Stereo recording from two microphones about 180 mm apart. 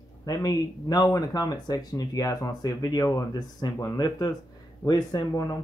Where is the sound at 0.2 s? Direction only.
20° left (ahead or behind).